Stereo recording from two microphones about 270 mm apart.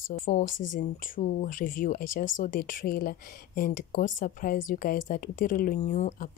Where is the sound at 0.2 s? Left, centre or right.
Left.